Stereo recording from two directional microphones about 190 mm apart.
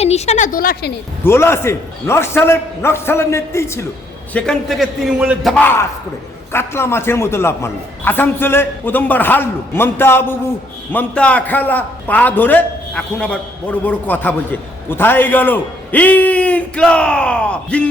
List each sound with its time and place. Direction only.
0.0 s a woman's voice: 35° left (ahead or behind); by 0.9 s 55° left (ahead or behind)
1.2 s a man's voice: 15° left (ahead or behind)
4.4 s a man's voice: centre (ahead or behind)